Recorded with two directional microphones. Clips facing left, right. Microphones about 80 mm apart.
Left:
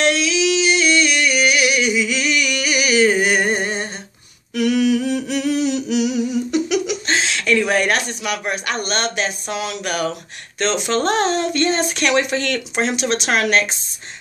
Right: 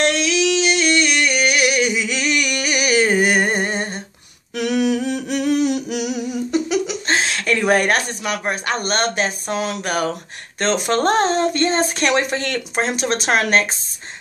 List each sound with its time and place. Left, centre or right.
0.0 s singing: right
4.6 s humming: right
6.5 s speech: right